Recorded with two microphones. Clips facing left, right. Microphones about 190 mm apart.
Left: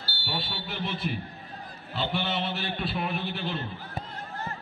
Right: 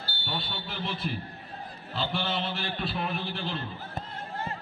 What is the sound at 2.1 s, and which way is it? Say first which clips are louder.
Speech: left 2 dB; centre (ahead or behind).